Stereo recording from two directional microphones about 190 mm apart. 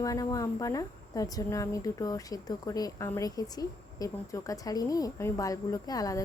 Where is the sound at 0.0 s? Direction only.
20° left (ahead or behind).